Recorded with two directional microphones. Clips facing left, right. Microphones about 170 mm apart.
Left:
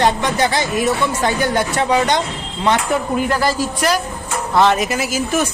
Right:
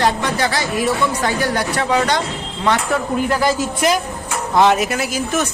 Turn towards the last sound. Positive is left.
turn(degrees=5)  # may be behind; listen again after turning